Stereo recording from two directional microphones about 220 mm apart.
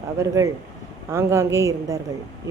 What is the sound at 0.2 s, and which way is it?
A woman's voice, 15° right (ahead or behind).